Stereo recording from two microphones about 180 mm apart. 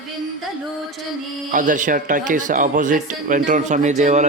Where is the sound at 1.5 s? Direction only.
45° right (ahead or behind).